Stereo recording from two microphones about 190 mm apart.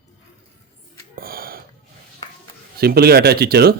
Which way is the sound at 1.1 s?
50° right (ahead or behind).